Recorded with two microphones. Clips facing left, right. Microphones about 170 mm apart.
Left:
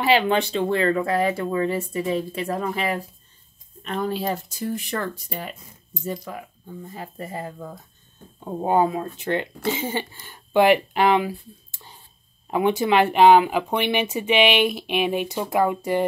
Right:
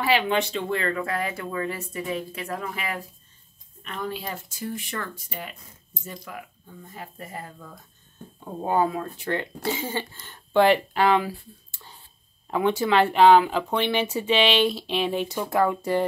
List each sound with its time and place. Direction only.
0.0 s speech: 30° left (ahead or behind)
8.5 s speech: 20° left (ahead or behind)
12.4 s speech: 15° left (ahead or behind)